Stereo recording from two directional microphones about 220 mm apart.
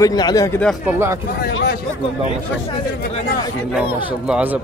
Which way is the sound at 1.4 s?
50° left (ahead or behind).